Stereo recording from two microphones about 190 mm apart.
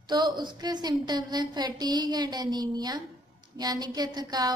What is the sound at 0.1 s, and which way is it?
A woman's voice, 20° right (ahead or behind).